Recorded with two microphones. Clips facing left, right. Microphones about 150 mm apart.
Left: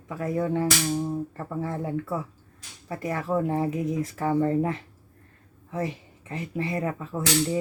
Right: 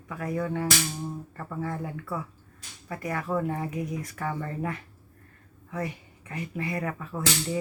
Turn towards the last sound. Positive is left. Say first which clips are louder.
# left 4 dB
turn(degrees=25)  # may be behind; listen again after turning